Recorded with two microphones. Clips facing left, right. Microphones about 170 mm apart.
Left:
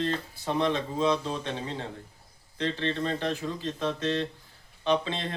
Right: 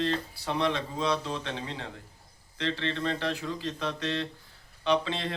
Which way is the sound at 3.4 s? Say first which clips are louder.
Left 2 dB; 20° left (ahead or behind).